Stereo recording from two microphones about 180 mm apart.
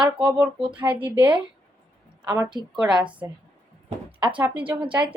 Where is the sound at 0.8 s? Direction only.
10° right (ahead or behind).